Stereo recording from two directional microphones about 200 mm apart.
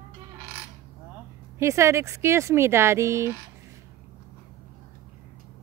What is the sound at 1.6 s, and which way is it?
Speech, 15° right (ahead or behind).